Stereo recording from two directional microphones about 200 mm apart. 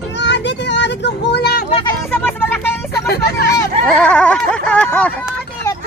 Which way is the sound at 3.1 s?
50° left (ahead or behind).